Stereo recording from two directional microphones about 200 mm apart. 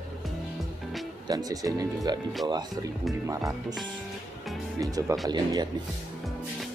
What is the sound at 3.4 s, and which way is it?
Speech, centre (ahead or behind).